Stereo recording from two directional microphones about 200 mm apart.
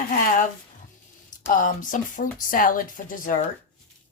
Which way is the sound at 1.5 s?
40° left (ahead or behind).